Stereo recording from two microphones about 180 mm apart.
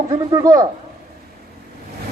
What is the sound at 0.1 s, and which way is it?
Speech, 20° right (ahead or behind).